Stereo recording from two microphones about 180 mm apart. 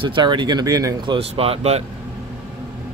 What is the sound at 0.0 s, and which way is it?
Speech, 25° right (ahead or behind).